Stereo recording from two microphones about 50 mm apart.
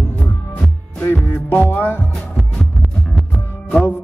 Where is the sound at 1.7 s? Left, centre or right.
Left.